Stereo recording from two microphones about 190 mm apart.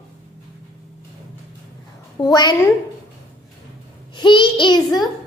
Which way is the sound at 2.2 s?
20° left (ahead or behind).